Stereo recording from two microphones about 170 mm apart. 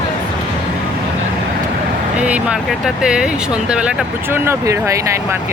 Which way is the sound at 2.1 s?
5° right (ahead or behind).